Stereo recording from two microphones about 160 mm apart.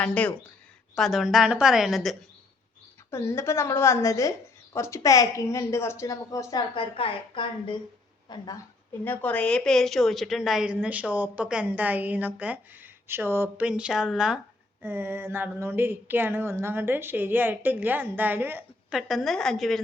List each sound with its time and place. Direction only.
0.0 s a woman's voice: 5° left (ahead or behind)
3.1 s a woman's voice: 15° left (ahead or behind)
9.0 s speech: 10° left (ahead or behind)
14.8 s speech: 15° right (ahead or behind)